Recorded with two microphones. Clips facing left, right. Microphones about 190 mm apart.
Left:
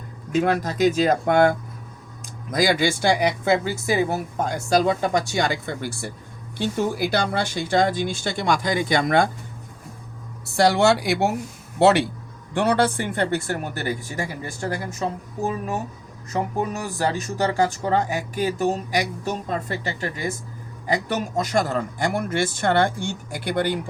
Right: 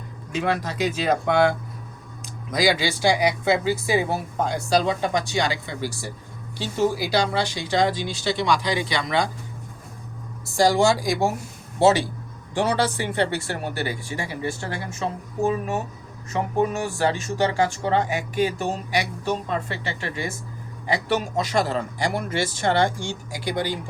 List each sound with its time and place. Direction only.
0.3 s speech: 45° left (ahead or behind)
10.4 s speech: 65° left (ahead or behind); by 15.0 s 40° left (ahead or behind)
16.8 s speech: 40° left (ahead or behind); by 23.8 s 60° left (ahead or behind)